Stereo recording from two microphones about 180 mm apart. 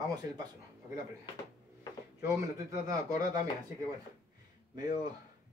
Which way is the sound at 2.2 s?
20° right (ahead or behind).